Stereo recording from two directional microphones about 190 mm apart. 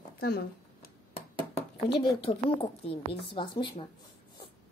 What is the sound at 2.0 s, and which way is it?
A woman's voice, 25° left (ahead or behind).